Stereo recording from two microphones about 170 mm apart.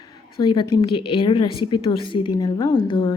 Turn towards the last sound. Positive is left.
turn(degrees=30)  # may be behind; listen again after turning